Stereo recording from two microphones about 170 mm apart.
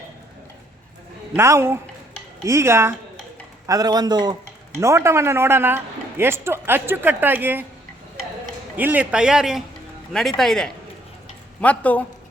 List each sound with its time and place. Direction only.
1.4 s speech: 15° right (ahead or behind)
8.7 s speech: 10° right (ahead or behind); by 12.0 s 10° left (ahead or behind)